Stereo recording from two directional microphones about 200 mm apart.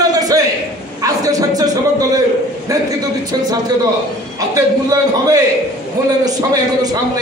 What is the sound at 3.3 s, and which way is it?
A man's voice, 20° right (ahead or behind).